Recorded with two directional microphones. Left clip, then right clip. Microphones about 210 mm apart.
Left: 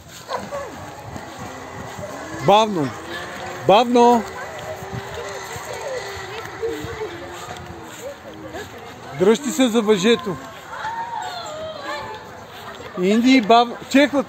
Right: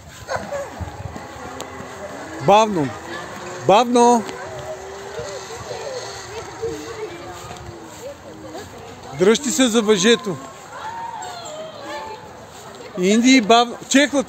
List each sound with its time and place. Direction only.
0.3 s a sound: 45° right (ahead or behind)
2.4 s a man's voice: 5° left (ahead or behind)
9.2 s a man's voice: centre (ahead or behind)
13.0 s a man's voice: centre (ahead or behind)